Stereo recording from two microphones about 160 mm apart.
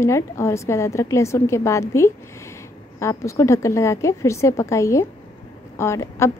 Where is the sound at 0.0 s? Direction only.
15° left (ahead or behind).